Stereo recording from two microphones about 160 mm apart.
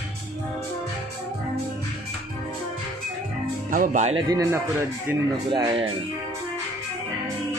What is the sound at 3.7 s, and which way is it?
Speech, 55° right (ahead or behind).